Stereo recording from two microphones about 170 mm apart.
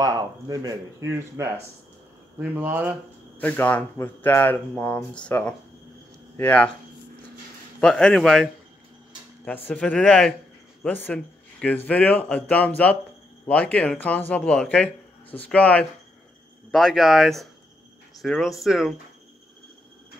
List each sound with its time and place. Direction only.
0.0 s speech: 20° right (ahead or behind)
3.3 s speech: 10° left (ahead or behind)
7.8 s speech: 5° left (ahead or behind)
9.7 s speech: 5° left (ahead or behind)